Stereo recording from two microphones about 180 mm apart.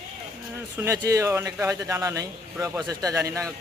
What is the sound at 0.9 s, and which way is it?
A man's voice, 15° right (ahead or behind).